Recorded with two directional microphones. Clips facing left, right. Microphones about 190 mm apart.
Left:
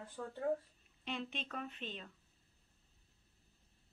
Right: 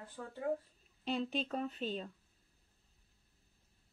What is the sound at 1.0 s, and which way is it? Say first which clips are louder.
A woman's voice: right 7 dB; 35° right (ahead or behind).